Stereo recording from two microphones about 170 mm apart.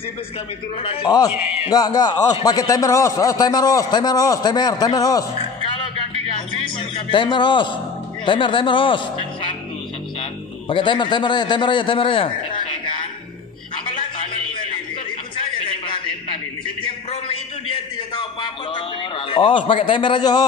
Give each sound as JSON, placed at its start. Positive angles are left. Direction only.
{"t": 0.8, "sound": "a man's voice", "side_deg": 35}
{"t": 1.1, "sound": "a man's voice", "side_deg": 20}
{"t": 5.3, "sound": "a sound", "side_deg": 30}
{"t": 6.8, "sound": "a man's voice", "side_deg": 30}
{"t": 10.7, "sound": "a man's voice", "side_deg": 30}
{"t": 15.3, "sound": "a sound", "side_deg": 30}